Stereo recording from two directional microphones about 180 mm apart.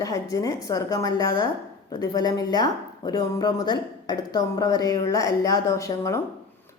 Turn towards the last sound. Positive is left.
turn(degrees=15)  # may be behind; listen again after turning